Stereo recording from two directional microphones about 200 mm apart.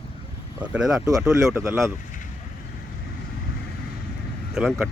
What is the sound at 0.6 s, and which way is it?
Speech, 5° right (ahead or behind).